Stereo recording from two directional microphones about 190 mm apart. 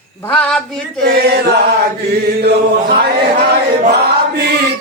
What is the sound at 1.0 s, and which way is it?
Chant, 60° right (ahead or behind).